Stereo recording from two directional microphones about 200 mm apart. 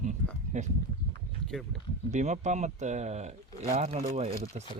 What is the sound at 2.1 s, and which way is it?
Speech, 35° right (ahead or behind).